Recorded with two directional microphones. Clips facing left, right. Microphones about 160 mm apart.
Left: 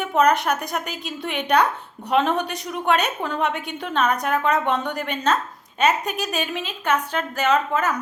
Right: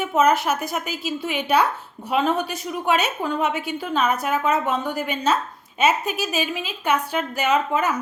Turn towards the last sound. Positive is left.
turn(degrees=-10)  # may be behind; listen again after turning